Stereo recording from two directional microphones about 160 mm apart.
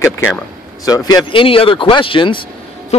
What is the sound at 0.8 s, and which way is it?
Speech, 25° left (ahead or behind).